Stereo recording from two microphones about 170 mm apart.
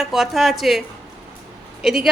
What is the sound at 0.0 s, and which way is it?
Speech, centre (ahead or behind).